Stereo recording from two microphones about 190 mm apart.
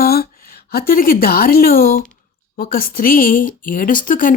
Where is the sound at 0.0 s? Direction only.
55° left (ahead or behind).